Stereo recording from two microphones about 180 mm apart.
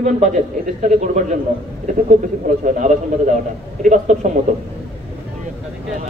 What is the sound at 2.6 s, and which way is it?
Speech, 45° right (ahead or behind).